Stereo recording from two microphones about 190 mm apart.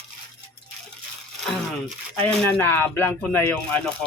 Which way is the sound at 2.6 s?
10° left (ahead or behind).